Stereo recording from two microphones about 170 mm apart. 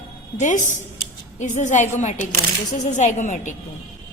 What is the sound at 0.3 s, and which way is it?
A woman's voice, 45° left (ahead or behind).